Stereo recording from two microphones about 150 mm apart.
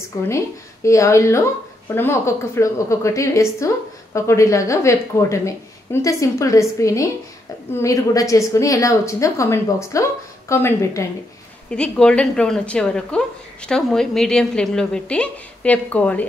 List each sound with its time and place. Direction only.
0.8 s a woman's voice: 20° left (ahead or behind)
11.7 s a woman's voice: 5° left (ahead or behind)